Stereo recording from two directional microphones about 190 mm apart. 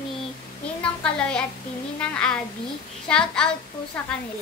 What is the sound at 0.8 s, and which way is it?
A child's voice, 5° left (ahead or behind).